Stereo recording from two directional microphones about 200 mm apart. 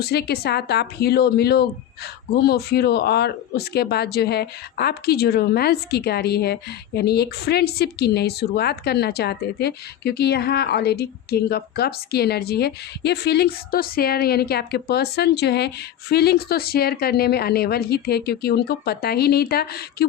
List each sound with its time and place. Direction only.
0.0 s speech: 55° left (ahead or behind)